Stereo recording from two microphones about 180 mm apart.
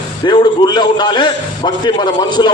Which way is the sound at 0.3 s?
25° left (ahead or behind).